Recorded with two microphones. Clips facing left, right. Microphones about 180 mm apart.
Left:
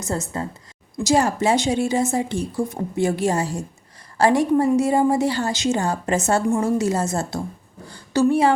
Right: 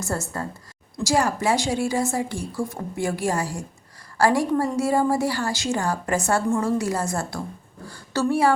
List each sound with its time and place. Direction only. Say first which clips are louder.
0.0 s a woman's voice: left 2 dB; 20° left (ahead or behind)